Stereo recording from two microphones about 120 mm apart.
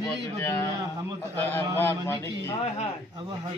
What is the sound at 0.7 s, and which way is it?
Speech, 25° right (ahead or behind).